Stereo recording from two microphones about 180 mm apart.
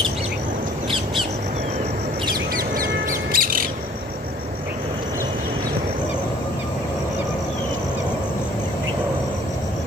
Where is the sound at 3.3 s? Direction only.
50° right (ahead or behind).